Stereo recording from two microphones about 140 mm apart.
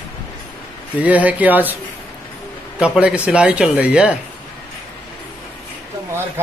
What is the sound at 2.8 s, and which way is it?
Speech, 5° right (ahead or behind).